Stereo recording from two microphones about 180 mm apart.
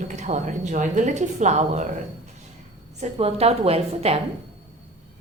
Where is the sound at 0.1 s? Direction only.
40° right (ahead or behind).